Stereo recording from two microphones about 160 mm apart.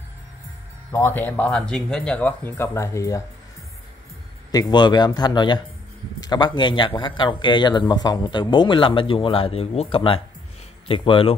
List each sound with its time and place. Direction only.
0.9 s speech: 15° left (ahead or behind)
4.5 s speech: 25° left (ahead or behind)